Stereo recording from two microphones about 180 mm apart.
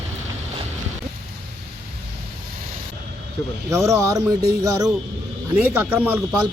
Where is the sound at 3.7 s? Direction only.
15° right (ahead or behind).